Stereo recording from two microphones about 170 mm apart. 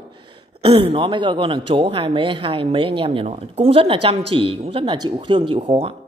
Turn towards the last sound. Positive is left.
turn(degrees=-35)  # may be behind; listen again after turning